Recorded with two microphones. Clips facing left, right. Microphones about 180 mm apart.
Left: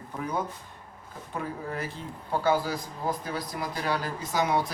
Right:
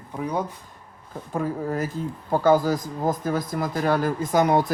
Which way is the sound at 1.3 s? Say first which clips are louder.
Right 8 dB; 45° right (ahead or behind).